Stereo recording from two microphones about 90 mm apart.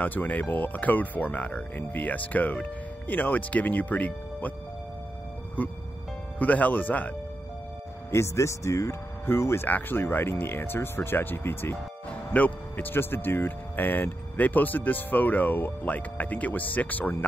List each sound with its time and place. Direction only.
0.0 s speech: 20° left (ahead or behind)
5.6 s speech: 20° left (ahead or behind)
8.1 s speech: 30° left (ahead or behind)